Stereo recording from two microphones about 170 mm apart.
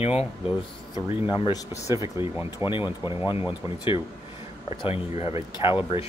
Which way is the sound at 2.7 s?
30° left (ahead or behind).